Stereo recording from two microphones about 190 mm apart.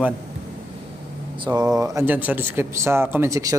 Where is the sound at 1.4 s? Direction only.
20° right (ahead or behind).